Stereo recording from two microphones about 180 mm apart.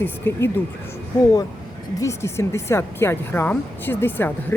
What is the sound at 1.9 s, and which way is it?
A woman's voice, 15° left (ahead or behind).